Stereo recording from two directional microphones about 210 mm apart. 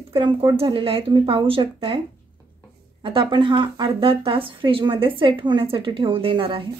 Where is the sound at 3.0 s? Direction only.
25° right (ahead or behind).